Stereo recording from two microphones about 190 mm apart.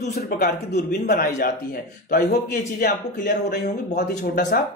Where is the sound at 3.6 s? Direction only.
40° left (ahead or behind).